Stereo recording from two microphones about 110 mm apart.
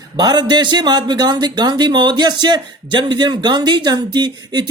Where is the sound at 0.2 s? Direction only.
40° right (ahead or behind).